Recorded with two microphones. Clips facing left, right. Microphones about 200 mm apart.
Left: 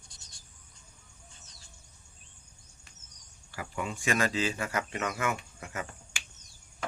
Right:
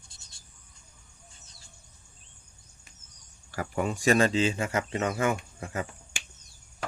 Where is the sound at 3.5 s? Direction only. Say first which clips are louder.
Right 6 dB; 45° right (ahead or behind).